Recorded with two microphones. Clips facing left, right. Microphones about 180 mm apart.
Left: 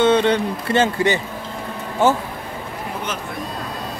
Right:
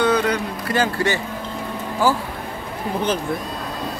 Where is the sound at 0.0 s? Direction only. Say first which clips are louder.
Left 3 dB; 25° left (ahead or behind).